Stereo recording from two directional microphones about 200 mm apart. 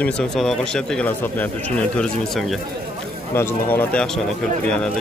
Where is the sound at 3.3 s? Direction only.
10° left (ahead or behind).